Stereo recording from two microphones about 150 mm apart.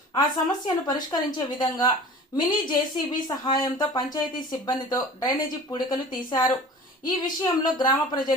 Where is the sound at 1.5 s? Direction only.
30° left (ahead or behind).